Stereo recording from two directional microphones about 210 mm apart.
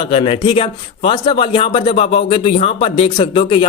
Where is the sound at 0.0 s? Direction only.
25° left (ahead or behind).